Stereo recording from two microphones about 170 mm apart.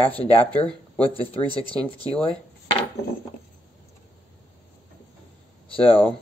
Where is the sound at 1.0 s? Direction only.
35° left (ahead or behind).